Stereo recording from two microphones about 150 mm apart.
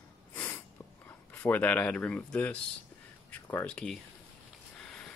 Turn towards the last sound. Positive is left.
turn(degrees=5)  # may be behind; listen again after turning